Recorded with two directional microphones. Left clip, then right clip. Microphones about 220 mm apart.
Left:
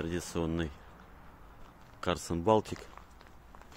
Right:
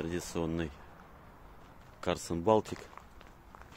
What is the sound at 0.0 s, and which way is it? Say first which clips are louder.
Speech: left 1 dB; 10° left (ahead or behind).